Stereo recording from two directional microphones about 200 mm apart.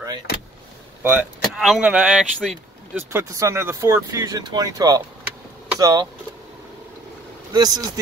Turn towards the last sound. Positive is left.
turn(degrees=-20)  # may be behind; listen again after turning